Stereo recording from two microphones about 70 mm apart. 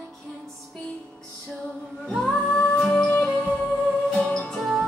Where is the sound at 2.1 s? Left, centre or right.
Centre.